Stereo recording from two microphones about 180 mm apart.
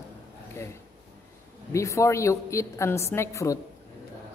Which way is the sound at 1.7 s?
15° left (ahead or behind).